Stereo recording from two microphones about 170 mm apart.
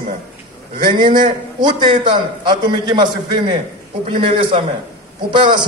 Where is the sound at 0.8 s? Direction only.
25° right (ahead or behind).